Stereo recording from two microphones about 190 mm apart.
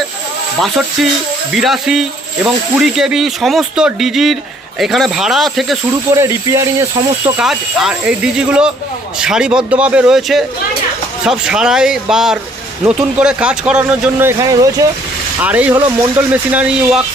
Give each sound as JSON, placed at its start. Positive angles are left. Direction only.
{"t": 1.5, "sound": "speech", "side_deg": 0}
{"t": 6.1, "sound": "a man's voice", "side_deg": -15}
{"t": 7.3, "sound": "a man's voice", "side_deg": -5}